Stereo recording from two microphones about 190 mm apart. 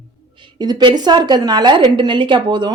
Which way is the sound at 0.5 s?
20° right (ahead or behind).